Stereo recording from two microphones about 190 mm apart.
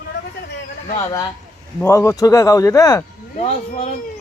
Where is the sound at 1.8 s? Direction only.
15° left (ahead or behind).